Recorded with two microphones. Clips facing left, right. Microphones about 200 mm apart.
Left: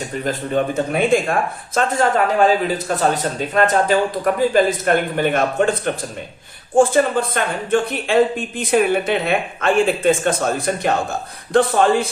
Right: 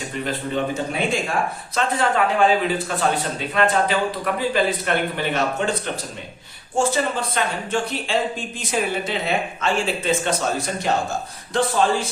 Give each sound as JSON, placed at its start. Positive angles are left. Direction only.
{"t": 0.3, "sound": "a man's voice", "side_deg": 50}
{"t": 1.7, "sound": "a man's voice", "side_deg": 45}